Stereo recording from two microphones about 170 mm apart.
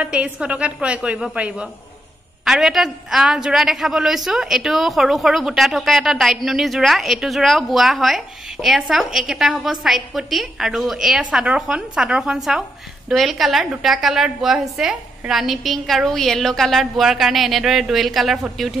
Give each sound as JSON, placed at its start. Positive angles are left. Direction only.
{"t": 0.0, "sound": "a woman's voice", "side_deg": -5}